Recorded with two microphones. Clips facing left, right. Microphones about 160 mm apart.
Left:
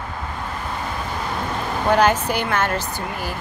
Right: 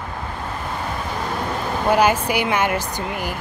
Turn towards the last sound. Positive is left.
turn(degrees=-15)  # may be behind; listen again after turning